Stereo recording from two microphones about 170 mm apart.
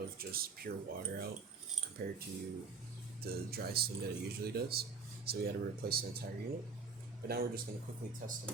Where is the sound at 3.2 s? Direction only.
65° right (ahead or behind).